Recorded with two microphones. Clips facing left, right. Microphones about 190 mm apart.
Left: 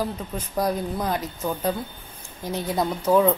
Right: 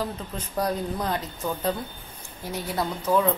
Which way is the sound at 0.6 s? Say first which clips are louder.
Left 2 dB; 10° left (ahead or behind).